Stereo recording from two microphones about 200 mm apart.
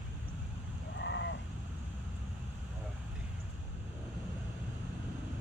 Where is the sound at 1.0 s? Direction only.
65° left (ahead or behind).